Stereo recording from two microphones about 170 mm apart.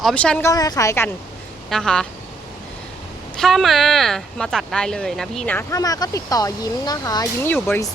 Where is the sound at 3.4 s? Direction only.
Centre (ahead or behind).